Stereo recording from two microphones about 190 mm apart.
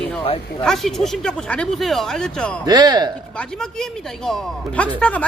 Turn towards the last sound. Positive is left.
turn(degrees=5)  # may be behind; listen again after turning